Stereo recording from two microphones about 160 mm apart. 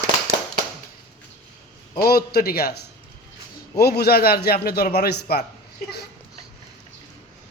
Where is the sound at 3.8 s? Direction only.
80° left.